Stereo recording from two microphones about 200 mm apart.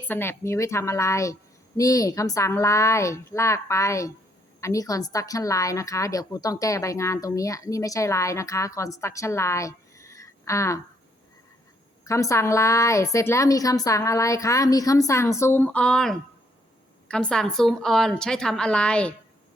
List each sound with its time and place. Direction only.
0.1 s a woman's voice: 10° left (ahead or behind)
12.0 s a woman's voice: 15° left (ahead or behind)